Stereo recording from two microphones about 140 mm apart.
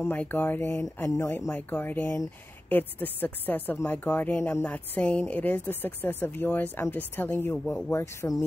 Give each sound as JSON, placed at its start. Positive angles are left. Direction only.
{"t": 0.0, "sound": "speech", "side_deg": 15}